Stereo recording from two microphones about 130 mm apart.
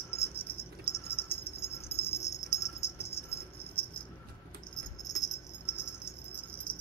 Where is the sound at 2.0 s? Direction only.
55° left (ahead or behind).